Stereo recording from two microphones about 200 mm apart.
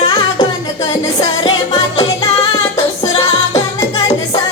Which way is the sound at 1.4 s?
20° left (ahead or behind).